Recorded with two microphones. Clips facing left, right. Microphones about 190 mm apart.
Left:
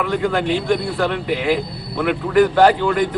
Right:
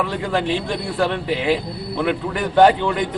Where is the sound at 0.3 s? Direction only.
25° right (ahead or behind).